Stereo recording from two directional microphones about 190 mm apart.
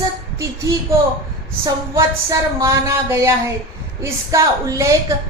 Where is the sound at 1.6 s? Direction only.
20° right (ahead or behind).